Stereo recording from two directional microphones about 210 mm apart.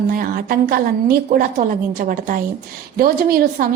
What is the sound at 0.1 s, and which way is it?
A woman's voice, 45° right (ahead or behind).